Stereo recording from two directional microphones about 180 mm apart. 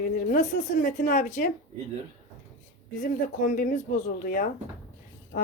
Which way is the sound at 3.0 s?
50° left (ahead or behind).